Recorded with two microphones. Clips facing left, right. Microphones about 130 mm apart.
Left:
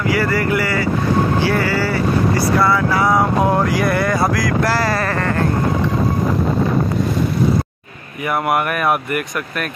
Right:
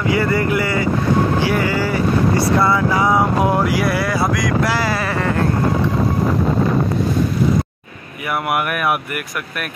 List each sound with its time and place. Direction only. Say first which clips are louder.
0.1 s speech: right 1 dB; 25° right (ahead or behind); by 5.3 s 5° right (ahead or behind)
8.3 s speech: left 2 dB; 5° right (ahead or behind)